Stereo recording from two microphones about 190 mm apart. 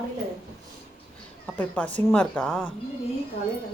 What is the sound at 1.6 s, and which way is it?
A woman's voice, 5° left (ahead or behind).